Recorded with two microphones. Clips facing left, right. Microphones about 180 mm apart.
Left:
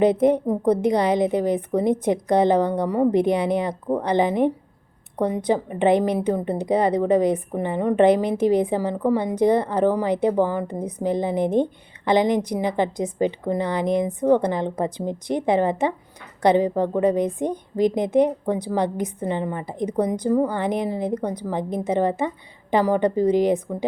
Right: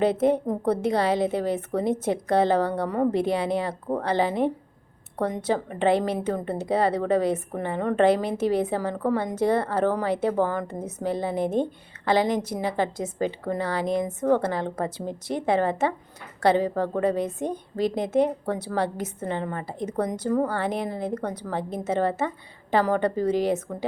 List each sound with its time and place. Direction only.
0.0 s a woman's voice: 15° left (ahead or behind)